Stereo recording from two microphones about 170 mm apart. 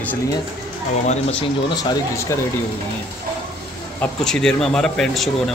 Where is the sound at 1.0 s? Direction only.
40° left (ahead or behind); by 2.4 s 15° left (ahead or behind).